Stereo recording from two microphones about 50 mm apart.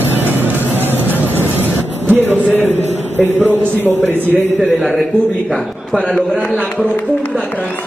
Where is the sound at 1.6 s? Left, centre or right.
Right.